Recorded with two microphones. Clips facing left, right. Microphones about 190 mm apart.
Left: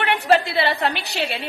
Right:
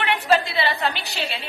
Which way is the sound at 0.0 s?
60° left (ahead or behind).